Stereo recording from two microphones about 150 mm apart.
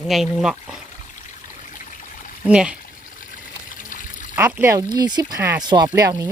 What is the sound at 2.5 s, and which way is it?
Speech, 5° right (ahead or behind).